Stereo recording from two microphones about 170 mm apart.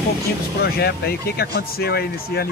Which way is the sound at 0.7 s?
70° left (ahead or behind).